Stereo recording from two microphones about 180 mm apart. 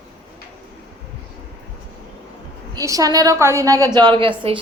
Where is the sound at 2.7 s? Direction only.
20° right (ahead or behind).